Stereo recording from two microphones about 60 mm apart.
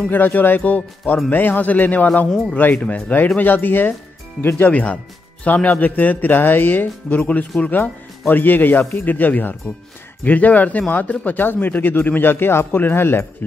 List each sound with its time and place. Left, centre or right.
0.1 s speech: left
4.6 s speech: left